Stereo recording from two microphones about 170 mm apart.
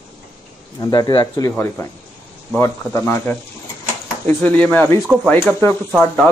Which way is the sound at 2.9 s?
15° left (ahead or behind).